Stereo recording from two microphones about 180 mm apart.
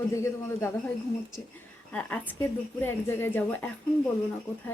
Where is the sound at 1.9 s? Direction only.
5° left (ahead or behind).